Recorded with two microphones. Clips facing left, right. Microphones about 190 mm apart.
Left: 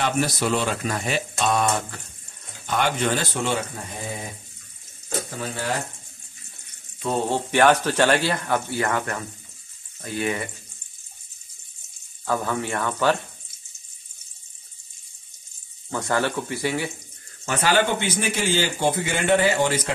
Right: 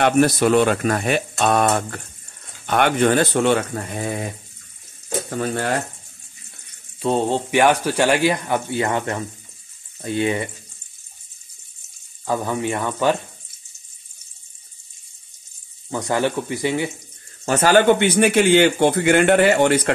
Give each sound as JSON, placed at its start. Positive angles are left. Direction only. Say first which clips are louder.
{"t": 0.0, "sound": "a man's voice", "louder": "right 8 dB", "side_deg": -55}
{"t": 5.3, "sound": "a man's voice", "louder": "right 7 dB", "side_deg": -60}
{"t": 7.0, "sound": "speech", "louder": "right 4 dB", "side_deg": -25}
{"t": 12.3, "sound": "speech", "louder": "right 3 dB", "side_deg": -15}
{"t": 15.9, "sound": "speech", "louder": "right 3 dB", "side_deg": -15}
{"t": 17.5, "sound": "speech", "louder": "right 6 dB", "side_deg": -45}
{"t": 17.8, "sound": "a man's voice", "louder": "right 10 dB", "side_deg": -65}